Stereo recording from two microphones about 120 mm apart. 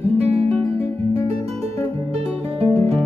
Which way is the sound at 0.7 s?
55° right (ahead or behind).